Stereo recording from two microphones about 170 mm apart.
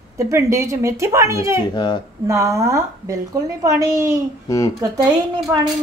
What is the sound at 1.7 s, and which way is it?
Cutlery, 25° left (ahead or behind).